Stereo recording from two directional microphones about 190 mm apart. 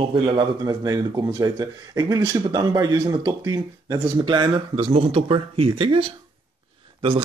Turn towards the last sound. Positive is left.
turn(degrees=-25)  # may be behind; listen again after turning